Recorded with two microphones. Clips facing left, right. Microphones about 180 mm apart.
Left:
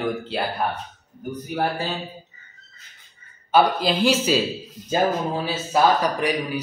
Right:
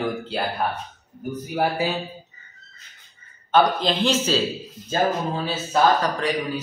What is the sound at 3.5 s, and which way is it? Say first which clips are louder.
Speech: left 1 dB; 5° left (ahead or behind).